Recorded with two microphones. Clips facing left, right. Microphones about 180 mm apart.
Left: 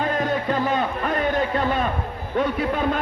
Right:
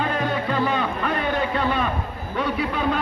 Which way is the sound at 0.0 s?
45° left (ahead or behind).